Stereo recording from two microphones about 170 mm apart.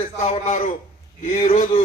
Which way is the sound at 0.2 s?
45° left (ahead or behind).